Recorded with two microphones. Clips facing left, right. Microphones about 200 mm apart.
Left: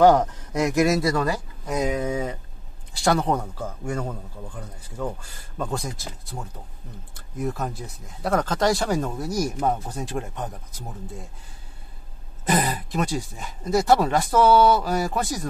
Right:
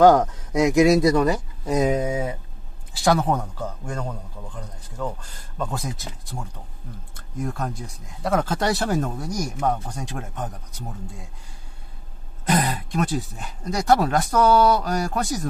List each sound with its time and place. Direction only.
0.5 s speech: 15° right (ahead or behind)
3.0 s speech: centre (ahead or behind)
12.4 s speech: centre (ahead or behind)